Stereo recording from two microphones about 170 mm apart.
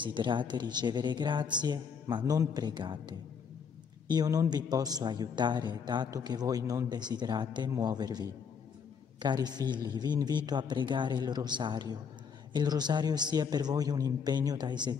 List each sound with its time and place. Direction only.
0.0 s a man's voice: 30° right (ahead or behind)